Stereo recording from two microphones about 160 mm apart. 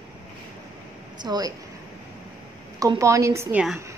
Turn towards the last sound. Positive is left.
turn(degrees=-15)  # may be behind; listen again after turning